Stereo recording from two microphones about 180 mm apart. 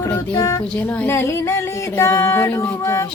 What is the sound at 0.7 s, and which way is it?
Speech, 10° left (ahead or behind).